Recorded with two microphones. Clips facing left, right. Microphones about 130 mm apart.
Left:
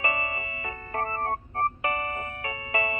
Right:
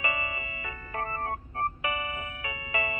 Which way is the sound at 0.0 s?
40° left (ahead or behind).